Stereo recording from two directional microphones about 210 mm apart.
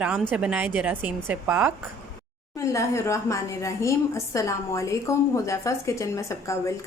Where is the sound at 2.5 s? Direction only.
15° left (ahead or behind).